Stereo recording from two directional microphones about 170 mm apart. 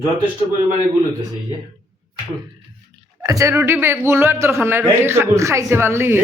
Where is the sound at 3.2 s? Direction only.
20° right (ahead or behind).